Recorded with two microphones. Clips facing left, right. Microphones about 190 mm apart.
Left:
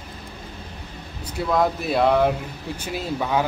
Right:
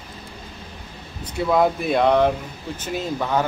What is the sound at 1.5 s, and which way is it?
Speech, centre (ahead or behind).